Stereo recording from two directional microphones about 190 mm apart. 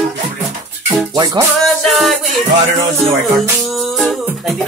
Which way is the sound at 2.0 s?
Centre (ahead or behind).